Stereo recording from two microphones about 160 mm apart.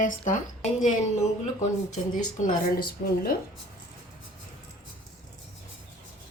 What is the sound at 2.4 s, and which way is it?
Speech, 70° left (ahead or behind).